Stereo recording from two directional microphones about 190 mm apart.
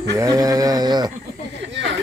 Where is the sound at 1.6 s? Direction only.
70° right (ahead or behind).